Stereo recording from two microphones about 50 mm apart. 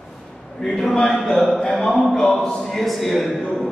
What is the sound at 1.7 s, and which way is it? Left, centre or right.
Speech, centre.